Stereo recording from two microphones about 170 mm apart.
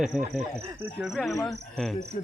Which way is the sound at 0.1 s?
5° right (ahead or behind).